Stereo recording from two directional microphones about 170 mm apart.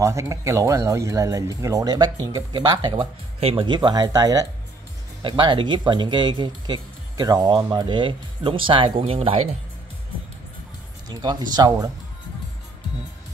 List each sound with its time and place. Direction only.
0.0 s speech: 20° right (ahead or behind); by 9.5 s 35° right (ahead or behind)
11.1 s speech: 25° right (ahead or behind)